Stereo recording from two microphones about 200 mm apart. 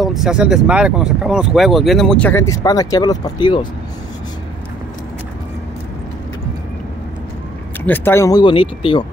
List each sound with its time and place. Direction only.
0.0 s speech: centre (ahead or behind); by 3.6 s 20° left (ahead or behind)
7.8 s speech: 10° left (ahead or behind)